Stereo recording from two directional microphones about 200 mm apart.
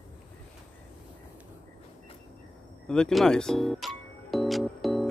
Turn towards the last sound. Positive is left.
turn(degrees=0)  # may be behind; listen again after turning